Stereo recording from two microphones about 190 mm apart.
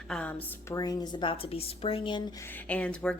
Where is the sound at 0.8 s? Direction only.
20° left (ahead or behind).